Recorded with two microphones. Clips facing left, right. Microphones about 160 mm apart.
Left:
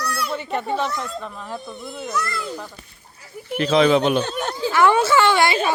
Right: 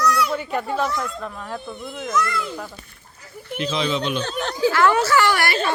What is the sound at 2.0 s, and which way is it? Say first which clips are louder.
Speech: right 3 dB; 30° left (ahead or behind).